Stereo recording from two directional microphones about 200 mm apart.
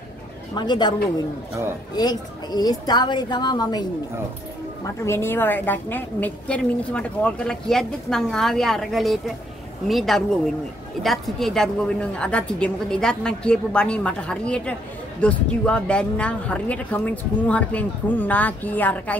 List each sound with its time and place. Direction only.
0.6 s a woman's voice: 20° left (ahead or behind)
2.0 s a woman's voice: 20° left (ahead or behind)
5.0 s a woman's voice: 10° left (ahead or behind)